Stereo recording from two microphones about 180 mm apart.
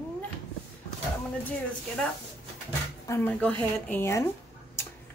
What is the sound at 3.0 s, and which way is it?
Speech, 10° left (ahead or behind).